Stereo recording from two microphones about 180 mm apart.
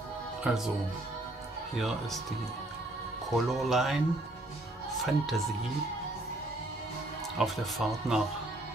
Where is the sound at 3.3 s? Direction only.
Centre (ahead or behind).